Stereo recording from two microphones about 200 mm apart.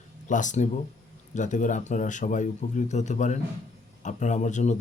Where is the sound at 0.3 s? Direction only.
40° left (ahead or behind).